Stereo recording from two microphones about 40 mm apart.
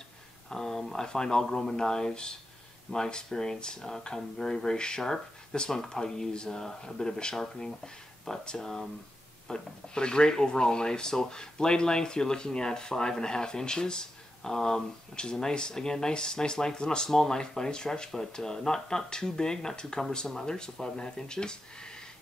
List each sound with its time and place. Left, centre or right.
0.5 s a sound: centre
0.9 s speech: centre
9.5 s speech: left